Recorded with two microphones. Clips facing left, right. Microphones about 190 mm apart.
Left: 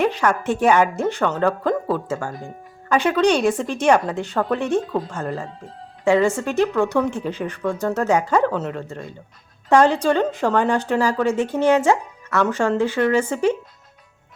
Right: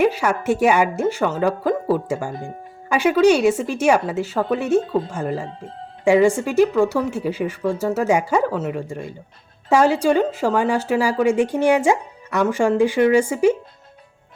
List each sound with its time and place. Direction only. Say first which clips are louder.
0.0 s a woman's voice: right 1 dB; 10° right (ahead or behind)
4.8 s speech: right 3 dB; 25° right (ahead or behind)
5.1 s a woman's voice: right 2 dB; 10° right (ahead or behind)